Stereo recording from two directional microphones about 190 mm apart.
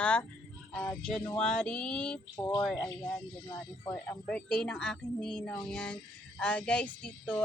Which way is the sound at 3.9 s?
5° left (ahead or behind).